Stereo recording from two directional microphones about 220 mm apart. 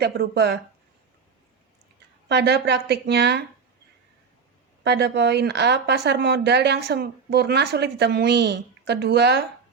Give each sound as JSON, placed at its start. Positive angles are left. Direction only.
{"t": 0.0, "sound": "speech", "side_deg": -50}
{"t": 2.3, "sound": "speech", "side_deg": -50}
{"t": 4.8, "sound": "speech", "side_deg": -50}